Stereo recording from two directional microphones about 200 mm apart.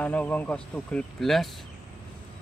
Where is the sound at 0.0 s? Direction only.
5° left (ahead or behind).